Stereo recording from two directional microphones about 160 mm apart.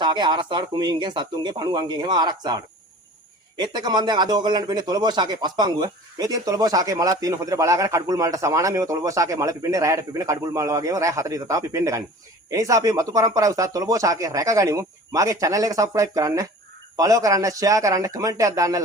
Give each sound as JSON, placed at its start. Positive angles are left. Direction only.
{"t": 0.0, "sound": "speech", "side_deg": -30}